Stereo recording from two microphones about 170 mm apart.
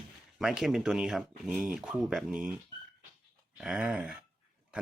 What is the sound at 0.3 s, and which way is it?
Speech, 5° right (ahead or behind).